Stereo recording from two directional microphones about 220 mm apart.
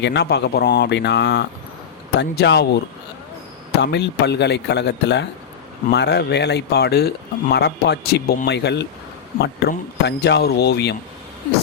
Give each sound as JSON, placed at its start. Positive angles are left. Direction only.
{"t": 0.0, "sound": "speech", "side_deg": 50}